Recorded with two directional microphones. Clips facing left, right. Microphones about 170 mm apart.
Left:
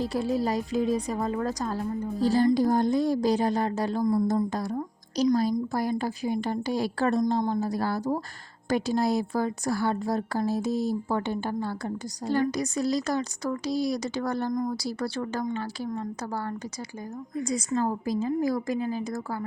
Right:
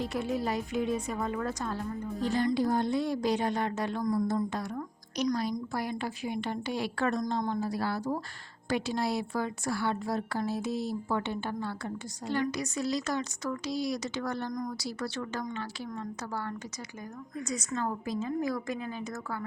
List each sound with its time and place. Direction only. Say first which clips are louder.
0.0 s speech: left 5 dB; 35° left (ahead or behind)